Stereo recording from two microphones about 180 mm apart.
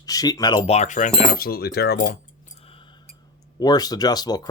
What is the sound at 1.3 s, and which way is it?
Speech, 55° left (ahead or behind).